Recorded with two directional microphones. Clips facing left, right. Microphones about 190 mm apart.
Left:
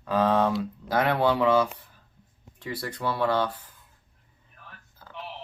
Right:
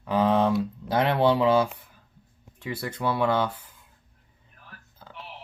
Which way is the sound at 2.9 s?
20° right (ahead or behind).